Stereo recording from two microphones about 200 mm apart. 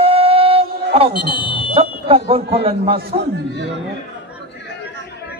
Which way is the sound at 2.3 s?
30° right (ahead or behind).